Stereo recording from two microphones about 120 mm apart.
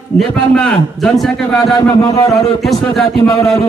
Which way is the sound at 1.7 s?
30° left (ahead or behind).